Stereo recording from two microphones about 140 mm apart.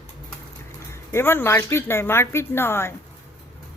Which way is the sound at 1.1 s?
15° left (ahead or behind).